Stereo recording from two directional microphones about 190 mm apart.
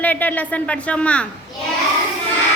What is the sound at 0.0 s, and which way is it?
A woman's voice, 10° left (ahead or behind).